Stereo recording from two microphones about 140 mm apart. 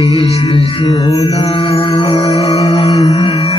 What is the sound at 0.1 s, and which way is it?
Speech, 45° left (ahead or behind).